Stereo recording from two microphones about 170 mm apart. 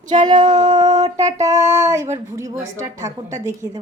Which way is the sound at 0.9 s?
40° right (ahead or behind).